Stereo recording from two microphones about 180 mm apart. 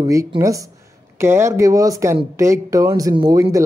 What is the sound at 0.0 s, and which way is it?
Speech, 15° right (ahead or behind).